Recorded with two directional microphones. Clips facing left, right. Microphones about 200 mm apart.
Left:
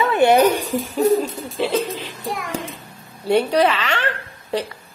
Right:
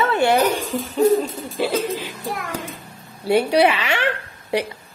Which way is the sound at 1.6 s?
5° right (ahead or behind).